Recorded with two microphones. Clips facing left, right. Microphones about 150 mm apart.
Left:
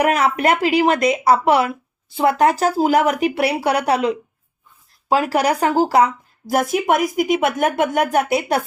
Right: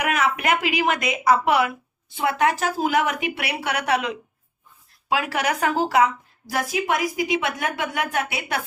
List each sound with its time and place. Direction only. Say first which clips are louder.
0.0 s speech: left 6 dB; 35° left (ahead or behind)
6.5 s a woman's voice: left 6 dB; 50° left (ahead or behind)